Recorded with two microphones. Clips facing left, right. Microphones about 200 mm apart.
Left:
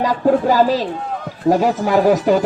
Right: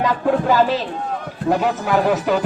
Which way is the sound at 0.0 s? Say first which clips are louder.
Left 3 dB; 40° left (ahead or behind).